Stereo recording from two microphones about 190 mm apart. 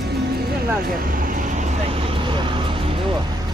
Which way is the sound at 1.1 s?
45° right (ahead or behind).